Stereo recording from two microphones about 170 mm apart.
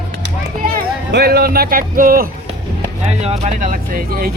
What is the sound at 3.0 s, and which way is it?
Speech, 40° right (ahead or behind).